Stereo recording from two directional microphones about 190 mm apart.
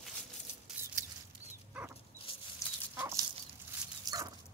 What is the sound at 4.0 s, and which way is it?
Dog, 20° right (ahead or behind).